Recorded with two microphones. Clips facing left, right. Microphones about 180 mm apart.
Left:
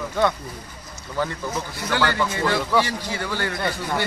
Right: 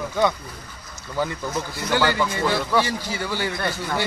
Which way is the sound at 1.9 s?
5° right (ahead or behind).